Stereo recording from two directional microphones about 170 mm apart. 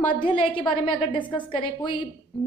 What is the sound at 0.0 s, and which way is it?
A woman's voice, 30° left (ahead or behind).